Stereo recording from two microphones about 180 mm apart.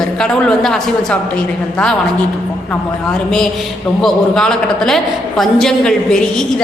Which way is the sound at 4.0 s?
5° left (ahead or behind).